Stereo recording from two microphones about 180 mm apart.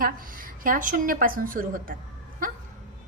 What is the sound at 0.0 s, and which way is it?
A woman's voice, 50° right (ahead or behind).